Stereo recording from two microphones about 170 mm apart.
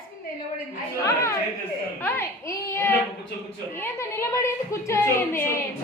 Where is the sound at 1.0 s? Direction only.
15° left (ahead or behind).